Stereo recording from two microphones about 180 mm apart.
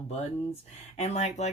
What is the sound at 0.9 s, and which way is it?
Speech, 40° left (ahead or behind).